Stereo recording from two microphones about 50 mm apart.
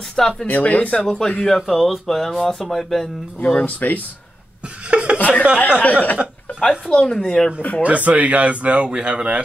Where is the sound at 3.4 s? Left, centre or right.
Left.